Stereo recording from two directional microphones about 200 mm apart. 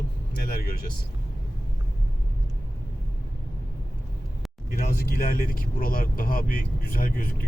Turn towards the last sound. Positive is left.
turn(degrees=45)  # may be behind; listen again after turning